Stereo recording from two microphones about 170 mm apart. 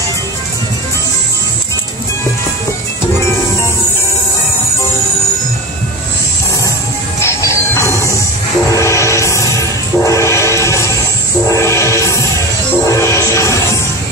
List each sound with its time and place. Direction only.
7.2 s music: 15° left (ahead or behind)